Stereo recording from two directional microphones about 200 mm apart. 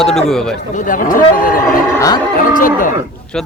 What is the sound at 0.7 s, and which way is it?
Speech, 40° left (ahead or behind).